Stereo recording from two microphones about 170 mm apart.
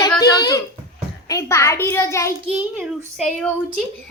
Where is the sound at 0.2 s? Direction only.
20° left (ahead or behind).